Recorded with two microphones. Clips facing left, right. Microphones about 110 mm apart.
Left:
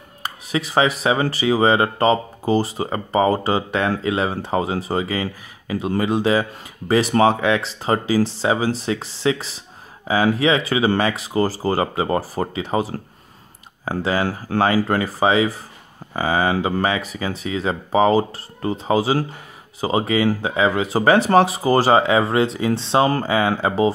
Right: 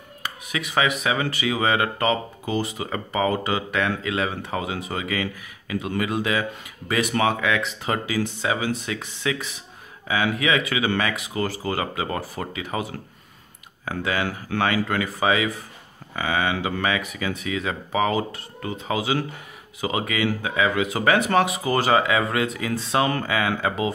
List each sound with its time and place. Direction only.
0.2 s speech: 30° left (ahead or behind)